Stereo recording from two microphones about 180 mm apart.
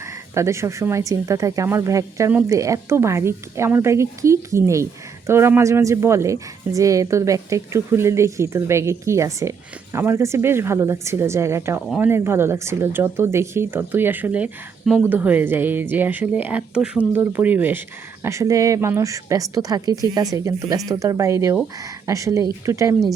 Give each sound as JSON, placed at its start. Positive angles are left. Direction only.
{"t": 0.0, "sound": "speech", "side_deg": -15}